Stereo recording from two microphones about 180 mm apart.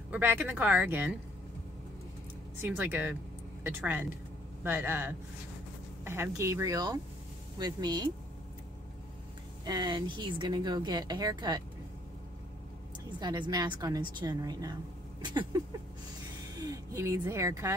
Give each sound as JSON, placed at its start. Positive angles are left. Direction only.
{"t": 0.1, "sound": "speech", "side_deg": -10}
{"t": 2.6, "sound": "a woman's voice", "side_deg": -10}
{"t": 9.7, "sound": "a woman's voice", "side_deg": -25}
{"t": 13.2, "sound": "a woman's voice", "side_deg": -25}
{"t": 16.5, "sound": "speech", "side_deg": -20}